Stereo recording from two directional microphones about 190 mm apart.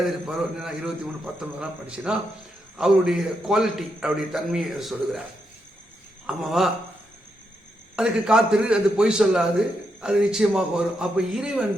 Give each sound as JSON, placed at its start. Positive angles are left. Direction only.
{"t": 0.0, "sound": "a man's voice", "side_deg": 0}
{"t": 6.2, "sound": "a man's voice", "side_deg": 0}
{"t": 7.9, "sound": "a man's voice", "side_deg": -5}